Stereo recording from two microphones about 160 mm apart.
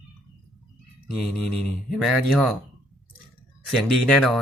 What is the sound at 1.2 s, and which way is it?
Speech, centre (ahead or behind).